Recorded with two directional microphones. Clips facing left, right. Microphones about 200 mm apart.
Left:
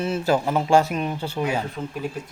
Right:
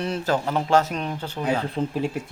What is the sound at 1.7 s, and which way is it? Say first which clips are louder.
Speech: right 5 dB; 30° right (ahead or behind).